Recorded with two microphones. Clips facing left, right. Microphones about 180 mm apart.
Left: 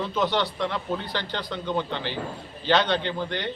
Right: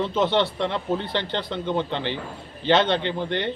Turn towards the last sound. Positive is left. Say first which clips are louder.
# right 2 dB
turn(degrees=-20)  # may be behind; listen again after turning